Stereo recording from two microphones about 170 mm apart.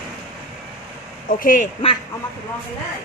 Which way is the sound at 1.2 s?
50° left (ahead or behind).